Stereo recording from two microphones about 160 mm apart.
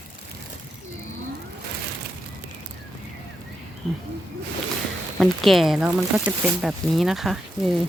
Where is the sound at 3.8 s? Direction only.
Centre (ahead or behind).